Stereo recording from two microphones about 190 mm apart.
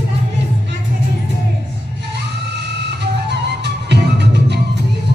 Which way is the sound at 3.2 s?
65° right (ahead or behind).